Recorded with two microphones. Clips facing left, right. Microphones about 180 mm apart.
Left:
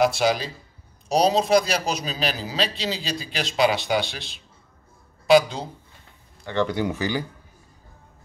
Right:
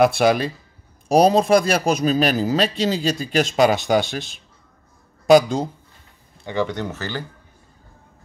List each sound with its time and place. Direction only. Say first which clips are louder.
0.0 s a man's voice: right 4 dB; 55° right (ahead or behind)
6.6 s speech: left 1 dB; 5° left (ahead or behind)